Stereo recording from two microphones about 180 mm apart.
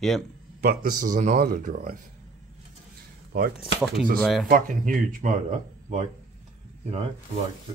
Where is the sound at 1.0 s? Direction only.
45° right (ahead or behind).